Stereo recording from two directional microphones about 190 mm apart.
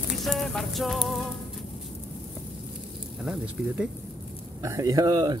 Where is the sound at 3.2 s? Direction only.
5° right (ahead or behind).